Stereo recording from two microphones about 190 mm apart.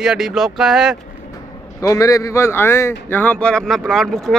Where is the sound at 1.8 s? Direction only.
15° left (ahead or behind); by 4.4 s centre (ahead or behind).